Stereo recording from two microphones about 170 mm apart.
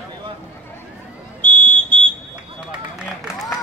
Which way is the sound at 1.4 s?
10° left (ahead or behind).